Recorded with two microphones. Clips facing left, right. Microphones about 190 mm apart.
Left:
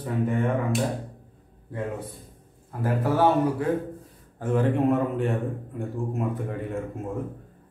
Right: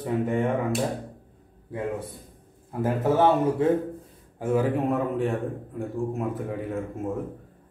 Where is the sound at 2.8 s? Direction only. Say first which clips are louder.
Right 1 dB; 20° right (ahead or behind).